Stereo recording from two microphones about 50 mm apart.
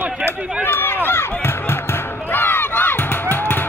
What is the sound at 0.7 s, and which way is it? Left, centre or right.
Run, left.